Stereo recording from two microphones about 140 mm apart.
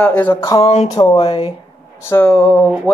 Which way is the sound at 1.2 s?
40° left (ahead or behind).